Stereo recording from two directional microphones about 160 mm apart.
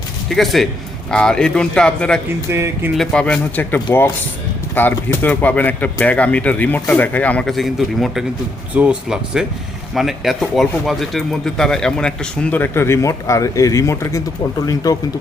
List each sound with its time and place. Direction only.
0.3 s speech: centre (ahead or behind)
2.5 s speech: 15° right (ahead or behind)
2.9 s speech: 5° left (ahead or behind); by 15.0 s 25° left (ahead or behind)